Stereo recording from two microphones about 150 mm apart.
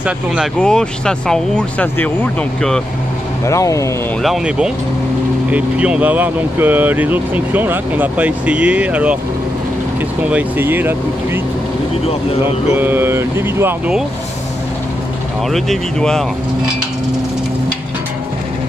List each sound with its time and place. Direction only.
0.6 s speech: 5° left (ahead or behind)
3.4 s speech: 20° left (ahead or behind)
4.2 s speech: 5° right (ahead or behind)
10.3 s speech: 15° right (ahead or behind)
12.7 s speech: 15° right (ahead or behind)
15.5 s speech: 5° left (ahead or behind)